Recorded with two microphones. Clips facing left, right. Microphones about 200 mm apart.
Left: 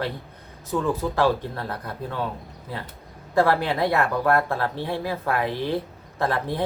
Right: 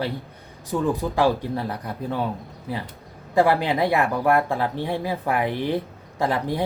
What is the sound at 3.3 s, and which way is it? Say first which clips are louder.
Speech: right 1 dB; 15° right (ahead or behind).